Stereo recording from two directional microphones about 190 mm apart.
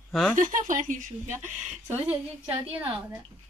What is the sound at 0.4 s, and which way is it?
Speech, 45° right (ahead or behind).